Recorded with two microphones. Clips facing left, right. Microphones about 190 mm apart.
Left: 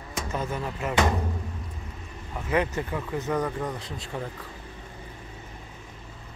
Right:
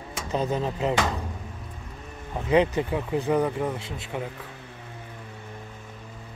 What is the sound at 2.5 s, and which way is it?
Speech, 20° right (ahead or behind).